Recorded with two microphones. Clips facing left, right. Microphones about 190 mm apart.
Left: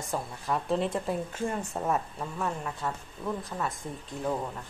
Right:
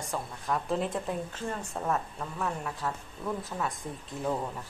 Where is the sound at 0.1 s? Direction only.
Centre (ahead or behind).